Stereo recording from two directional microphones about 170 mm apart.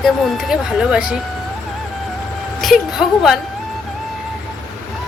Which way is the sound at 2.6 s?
Centre (ahead or behind).